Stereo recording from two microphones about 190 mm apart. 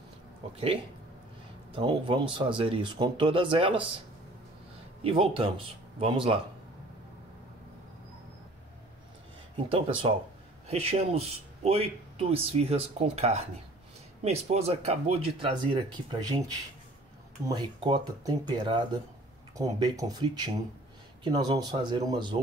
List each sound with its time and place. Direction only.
1.7 s speech: 25° right (ahead or behind)
5.3 s speech: 30° right (ahead or behind)
9.6 s speech: 30° right (ahead or behind)
17.5 s speech: 25° right (ahead or behind)